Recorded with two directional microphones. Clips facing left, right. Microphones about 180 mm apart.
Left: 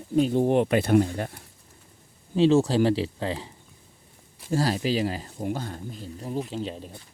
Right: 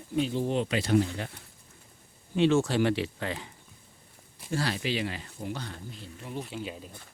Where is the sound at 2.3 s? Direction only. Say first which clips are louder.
Left 4 dB; 35° left (ahead or behind).